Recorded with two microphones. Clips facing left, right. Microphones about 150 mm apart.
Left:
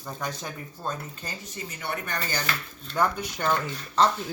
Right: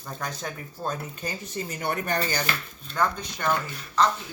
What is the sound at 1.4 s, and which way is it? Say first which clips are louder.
Speech: right 5 dB; 30° right (ahead or behind).